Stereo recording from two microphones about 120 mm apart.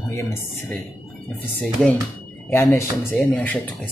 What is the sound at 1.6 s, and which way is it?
Speech, 10° left (ahead or behind).